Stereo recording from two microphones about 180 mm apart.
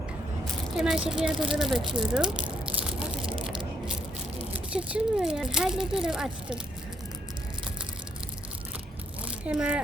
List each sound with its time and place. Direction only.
0.8 s speech: 5° right (ahead or behind)
3.3 s crushing: 30° right (ahead or behind)
4.7 s speech: 5° right (ahead or behind)
9.2 s a sound: 5° right (ahead or behind)